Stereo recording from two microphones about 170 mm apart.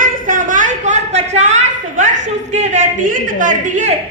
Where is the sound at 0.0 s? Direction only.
50° right (ahead or behind).